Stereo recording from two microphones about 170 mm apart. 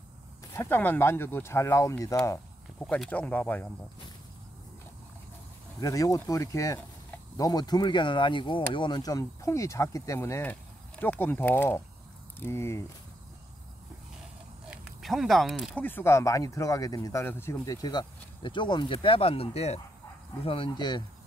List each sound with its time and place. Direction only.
0.5 s speech: 15° left (ahead or behind)
5.8 s speech: 20° left (ahead or behind)
14.7 s speech: centre (ahead or behind)
15.8 s speech: 15° left (ahead or behind)